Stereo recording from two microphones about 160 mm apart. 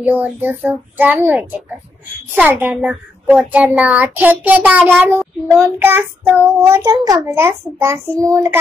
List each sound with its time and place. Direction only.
0.0 s a child's voice: 10° right (ahead or behind)